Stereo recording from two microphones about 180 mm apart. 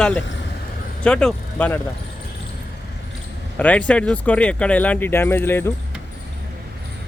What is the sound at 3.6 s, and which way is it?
Speech, 10° left (ahead or behind).